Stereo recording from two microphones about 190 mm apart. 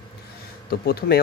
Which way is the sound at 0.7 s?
55° left (ahead or behind).